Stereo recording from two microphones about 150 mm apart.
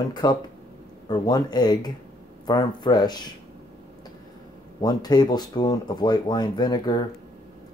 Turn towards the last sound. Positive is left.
turn(degrees=30)  # may be behind; listen again after turning